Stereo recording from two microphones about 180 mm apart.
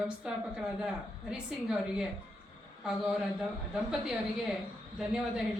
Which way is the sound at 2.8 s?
5° right (ahead or behind).